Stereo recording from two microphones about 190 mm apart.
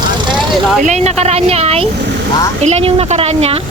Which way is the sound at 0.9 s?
35° right (ahead or behind).